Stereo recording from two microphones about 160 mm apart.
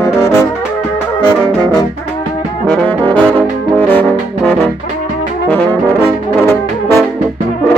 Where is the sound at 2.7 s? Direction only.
10° left (ahead or behind).